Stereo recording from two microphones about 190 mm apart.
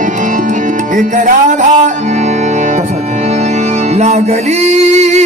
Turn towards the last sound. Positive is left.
turn(degrees=-35)  # may be behind; listen again after turning